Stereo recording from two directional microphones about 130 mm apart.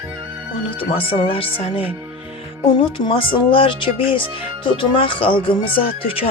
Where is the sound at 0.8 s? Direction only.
45° left (ahead or behind).